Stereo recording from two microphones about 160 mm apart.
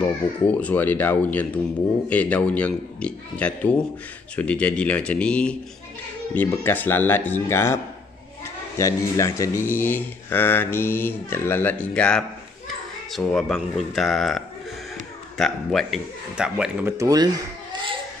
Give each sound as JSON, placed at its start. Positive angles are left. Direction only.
{"t": 0.5, "sound": "a man's voice", "side_deg": 10}
{"t": 16.9, "sound": "speech", "side_deg": -20}